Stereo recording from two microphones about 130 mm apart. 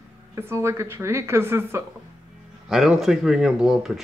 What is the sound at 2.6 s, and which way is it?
Speech, centre (ahead or behind).